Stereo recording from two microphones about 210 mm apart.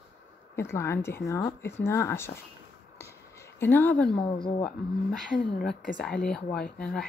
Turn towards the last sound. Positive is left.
turn(degrees=5)  # may be behind; listen again after turning